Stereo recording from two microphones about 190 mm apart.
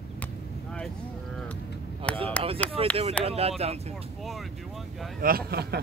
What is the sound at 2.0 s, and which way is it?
Speech, 30° right (ahead or behind).